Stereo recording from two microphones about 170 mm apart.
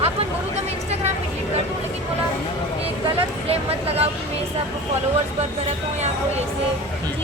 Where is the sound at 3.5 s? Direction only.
35° right (ahead or behind).